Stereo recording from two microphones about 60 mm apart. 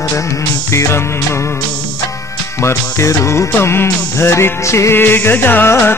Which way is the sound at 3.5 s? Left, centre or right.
Left.